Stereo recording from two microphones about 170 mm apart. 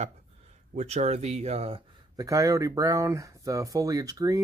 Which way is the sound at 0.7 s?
40° right (ahead or behind).